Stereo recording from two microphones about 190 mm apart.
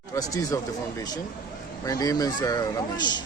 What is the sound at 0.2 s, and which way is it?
Speech, 15° left (ahead or behind).